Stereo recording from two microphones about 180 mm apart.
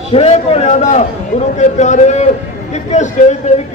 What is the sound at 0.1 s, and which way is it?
Speech, 35° left (ahead or behind).